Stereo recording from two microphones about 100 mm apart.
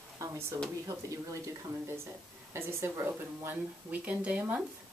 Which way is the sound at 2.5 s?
30° right (ahead or behind).